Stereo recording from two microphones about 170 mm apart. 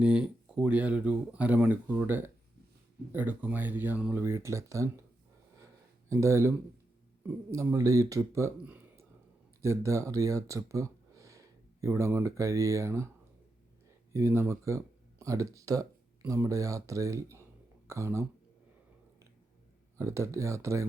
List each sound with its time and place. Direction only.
0.0 s speech: 5° right (ahead or behind)
6.1 s speech: 15° right (ahead or behind)
14.1 s speech: 15° right (ahead or behind)
20.0 s speech: 15° right (ahead or behind)